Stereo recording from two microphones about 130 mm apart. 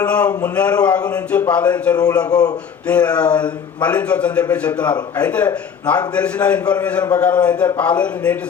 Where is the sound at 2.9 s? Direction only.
10° left (ahead or behind).